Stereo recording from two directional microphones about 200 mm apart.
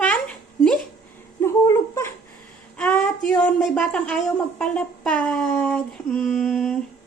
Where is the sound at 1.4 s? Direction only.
15° left (ahead or behind).